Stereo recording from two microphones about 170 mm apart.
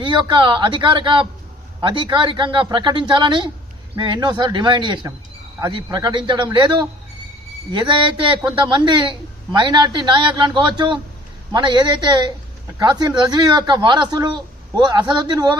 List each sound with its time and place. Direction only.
0.0 s speech: 25° right (ahead or behind)